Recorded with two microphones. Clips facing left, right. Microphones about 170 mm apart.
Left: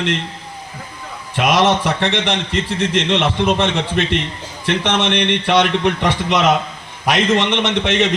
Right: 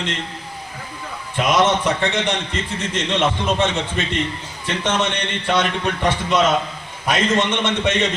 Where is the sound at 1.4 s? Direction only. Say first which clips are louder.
Left 2 dB; 75° left (ahead or behind).